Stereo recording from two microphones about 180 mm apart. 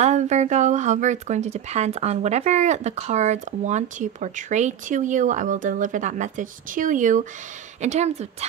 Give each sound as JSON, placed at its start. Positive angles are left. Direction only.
{"t": 0.0, "sound": "speech", "side_deg": -40}